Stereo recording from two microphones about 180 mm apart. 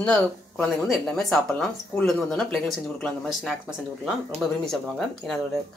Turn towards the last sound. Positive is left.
turn(degrees=0)  # may be behind; listen again after turning